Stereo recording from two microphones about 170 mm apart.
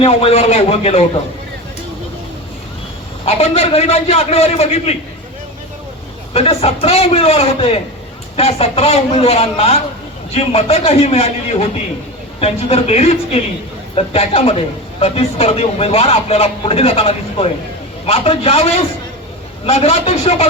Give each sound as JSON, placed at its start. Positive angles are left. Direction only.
{"t": 0.0, "sound": "a man's voice", "side_deg": 35}
{"t": 3.2, "sound": "a man's voice", "side_deg": 40}
{"t": 6.3, "sound": "a man's voice", "side_deg": 35}
{"t": 12.4, "sound": "a man's voice", "side_deg": 35}